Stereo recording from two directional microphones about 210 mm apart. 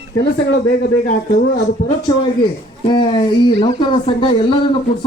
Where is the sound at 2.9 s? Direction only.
25° left (ahead or behind).